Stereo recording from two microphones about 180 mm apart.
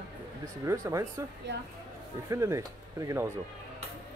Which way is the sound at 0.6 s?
15° right (ahead or behind).